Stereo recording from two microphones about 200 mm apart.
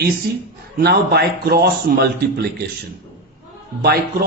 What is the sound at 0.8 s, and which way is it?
A man's voice, 50° right (ahead or behind).